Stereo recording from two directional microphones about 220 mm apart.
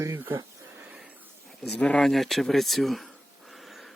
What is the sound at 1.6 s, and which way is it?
Speech, 5° left (ahead or behind).